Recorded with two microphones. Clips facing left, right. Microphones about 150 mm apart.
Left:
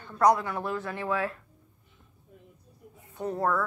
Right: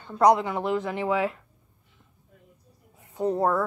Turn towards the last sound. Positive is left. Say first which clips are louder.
# right 4 dB
turn(degrees=-25)  # may be behind; listen again after turning